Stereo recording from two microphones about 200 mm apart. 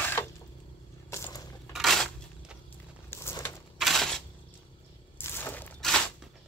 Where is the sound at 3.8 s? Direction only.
Centre (ahead or behind).